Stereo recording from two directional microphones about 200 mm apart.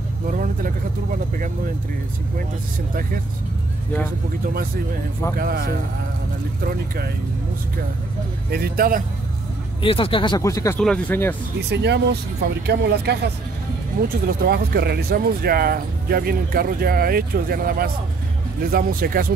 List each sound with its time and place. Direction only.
0.3 s vehicle: 45° right (ahead or behind)
2.9 s speech: 45° right (ahead or behind)
5.4 s speech: 50° right (ahead or behind)
8.5 s speech: 50° right (ahead or behind)
9.8 s speech: 25° left (ahead or behind); by 11.3 s 10° left (ahead or behind)
11.7 s speech: 55° right (ahead or behind)